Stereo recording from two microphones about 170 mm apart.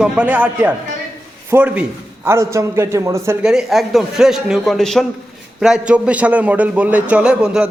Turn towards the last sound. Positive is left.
turn(degrees=-5)  # may be behind; listen again after turning